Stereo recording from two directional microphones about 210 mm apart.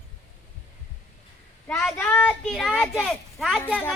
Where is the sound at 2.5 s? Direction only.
Centre (ahead or behind).